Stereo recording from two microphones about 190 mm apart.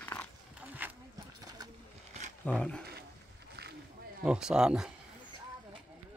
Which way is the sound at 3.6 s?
55° right (ahead or behind).